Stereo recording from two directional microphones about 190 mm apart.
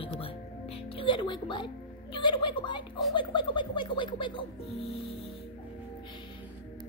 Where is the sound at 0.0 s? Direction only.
30° left (ahead or behind).